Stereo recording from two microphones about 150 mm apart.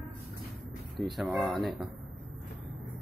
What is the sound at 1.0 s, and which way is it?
Speech, centre (ahead or behind).